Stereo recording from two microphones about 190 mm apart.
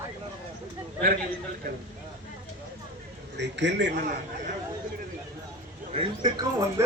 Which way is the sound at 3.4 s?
70° right (ahead or behind).